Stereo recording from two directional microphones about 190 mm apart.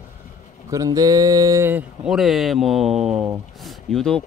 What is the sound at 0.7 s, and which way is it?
Speech, 20° right (ahead or behind).